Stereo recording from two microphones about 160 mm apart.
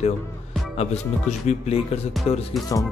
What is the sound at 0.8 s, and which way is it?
Speech, 45° left (ahead or behind).